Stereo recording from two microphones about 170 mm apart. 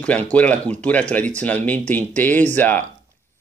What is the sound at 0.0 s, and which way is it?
Speech, 10° left (ahead or behind).